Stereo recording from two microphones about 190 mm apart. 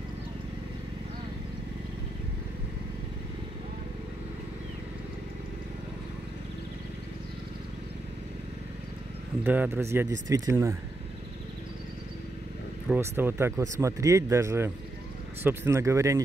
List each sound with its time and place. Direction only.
9.4 s speech: 10° right (ahead or behind)
10.0 s speech: 75° right (ahead or behind)
10.3 s speech: 15° right (ahead or behind)
13.1 s speech: 10° right (ahead or behind)